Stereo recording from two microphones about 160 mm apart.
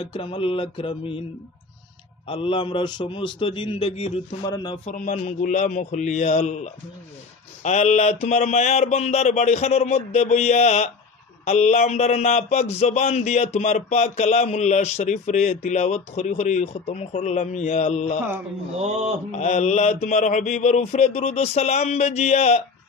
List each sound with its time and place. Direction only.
0.0 s a man's voice: 35° left (ahead or behind)
2.2 s a man's voice: 35° left (ahead or behind)
4.8 s speech: 50° left (ahead or behind)
18.8 s speech: 45° right (ahead or behind)
19.3 s speech: 45° left (ahead or behind)